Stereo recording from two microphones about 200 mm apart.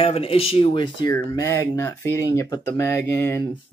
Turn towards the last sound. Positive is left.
turn(degrees=15)  # may be behind; listen again after turning